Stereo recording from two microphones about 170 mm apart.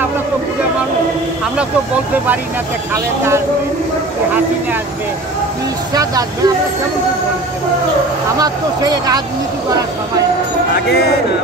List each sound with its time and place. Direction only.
2.9 s speech: 15° right (ahead or behind)
5.9 s speech: 20° right (ahead or behind)
8.4 s speech: 20° right (ahead or behind)